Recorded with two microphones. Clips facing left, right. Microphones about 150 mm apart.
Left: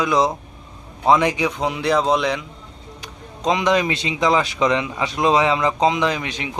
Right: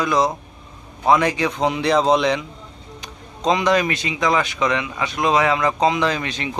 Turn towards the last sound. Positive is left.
turn(degrees=15)  # may be behind; listen again after turning